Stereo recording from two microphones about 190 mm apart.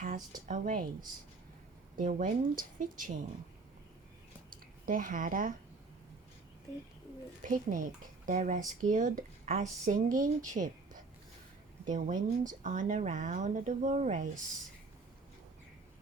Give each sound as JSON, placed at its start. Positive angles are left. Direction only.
{"t": 0.4, "sound": "speech", "side_deg": -45}
{"t": 2.0, "sound": "speech", "side_deg": -45}
{"t": 4.4, "sound": "a sound", "side_deg": -45}
{"t": 7.4, "sound": "speech", "side_deg": -45}